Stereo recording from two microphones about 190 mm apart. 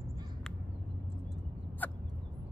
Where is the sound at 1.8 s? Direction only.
10° left (ahead or behind).